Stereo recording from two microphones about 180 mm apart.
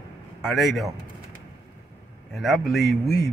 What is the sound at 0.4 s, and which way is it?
Speech, centre (ahead or behind).